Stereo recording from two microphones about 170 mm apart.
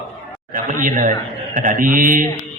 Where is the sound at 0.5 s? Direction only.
55° right (ahead or behind).